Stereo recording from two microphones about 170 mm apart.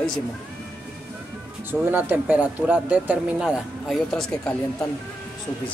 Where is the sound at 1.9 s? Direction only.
10° right (ahead or behind).